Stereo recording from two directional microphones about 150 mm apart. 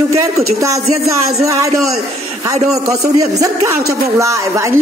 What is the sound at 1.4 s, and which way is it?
Speech, 20° right (ahead or behind).